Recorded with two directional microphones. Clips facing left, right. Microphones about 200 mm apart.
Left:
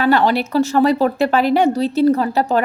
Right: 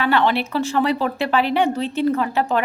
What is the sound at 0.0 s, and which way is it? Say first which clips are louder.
Speech: left 4 dB; 40° left (ahead or behind).